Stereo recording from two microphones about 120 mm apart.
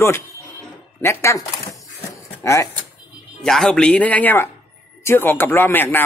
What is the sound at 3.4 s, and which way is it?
Speech, 5° left (ahead or behind).